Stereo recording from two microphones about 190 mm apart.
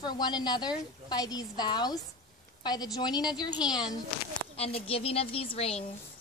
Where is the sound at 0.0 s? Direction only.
20° left (ahead or behind).